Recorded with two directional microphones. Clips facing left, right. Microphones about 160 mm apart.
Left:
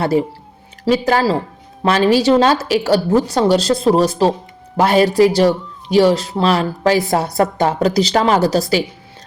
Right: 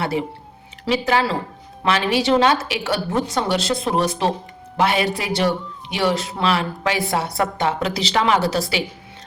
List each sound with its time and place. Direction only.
0.0 s a woman's voice: 40° left (ahead or behind)